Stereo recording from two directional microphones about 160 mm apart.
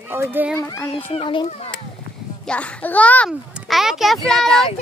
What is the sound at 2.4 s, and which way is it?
Speech, 5° left (ahead or behind).